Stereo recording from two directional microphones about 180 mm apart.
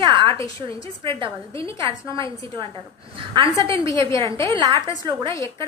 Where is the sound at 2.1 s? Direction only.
25° right (ahead or behind).